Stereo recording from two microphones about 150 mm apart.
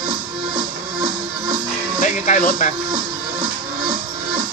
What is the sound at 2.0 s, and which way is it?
Music, 55° left (ahead or behind).